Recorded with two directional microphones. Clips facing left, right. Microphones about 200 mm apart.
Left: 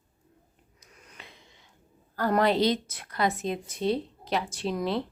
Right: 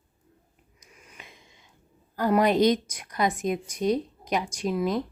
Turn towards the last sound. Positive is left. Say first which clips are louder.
# right 2 dB
turn(degrees=-10)  # may be behind; listen again after turning